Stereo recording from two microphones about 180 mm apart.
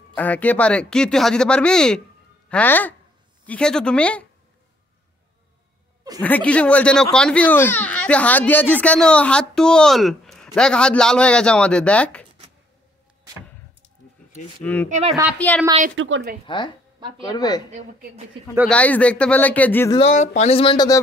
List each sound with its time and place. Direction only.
0.1 s a child's voice: 10° left (ahead or behind)
6.2 s a child's voice: 10° left (ahead or behind)
14.6 s speech: 10° left (ahead or behind)
14.9 s speech: 40° right (ahead or behind)
15.3 s speech: 10° left (ahead or behind)
16.0 s a woman's voice: 90° right
16.4 s speech: 25° left (ahead or behind)
17.6 s speech: 40° right (ahead or behind)
18.7 s speech: 5° left (ahead or behind)
20.0 s speech: 40° left (ahead or behind); by 21.0 s 20° left (ahead or behind)